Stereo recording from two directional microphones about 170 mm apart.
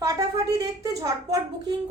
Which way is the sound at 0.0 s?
20° right (ahead or behind).